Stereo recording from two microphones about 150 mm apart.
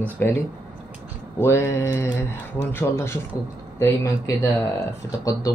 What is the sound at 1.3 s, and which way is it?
Speech, 15° left (ahead or behind).